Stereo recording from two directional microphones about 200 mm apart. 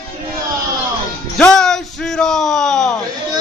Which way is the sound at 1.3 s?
5° left (ahead or behind).